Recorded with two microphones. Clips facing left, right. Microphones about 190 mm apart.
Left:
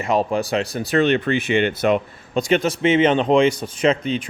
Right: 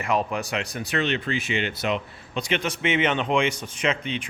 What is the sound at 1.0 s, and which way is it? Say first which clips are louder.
A man's voice: left 8 dB; 55° left (ahead or behind).